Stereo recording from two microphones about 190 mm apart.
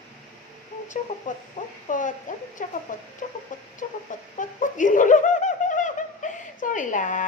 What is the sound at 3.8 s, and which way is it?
Speech, 45° left (ahead or behind).